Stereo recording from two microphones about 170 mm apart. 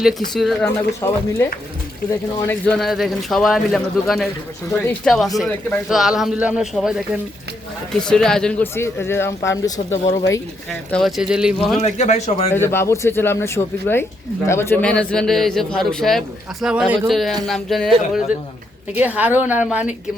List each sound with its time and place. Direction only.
0.0 s a man's voice: centre (ahead or behind)
1.0 s speech: 15° left (ahead or behind)
2.7 s a man's voice: centre (ahead or behind)
10.9 s a man's voice: centre (ahead or behind)
11.8 s speech: 40° left (ahead or behind)
12.5 s a man's voice: 15° left (ahead or behind); by 19.9 s 10° right (ahead or behind)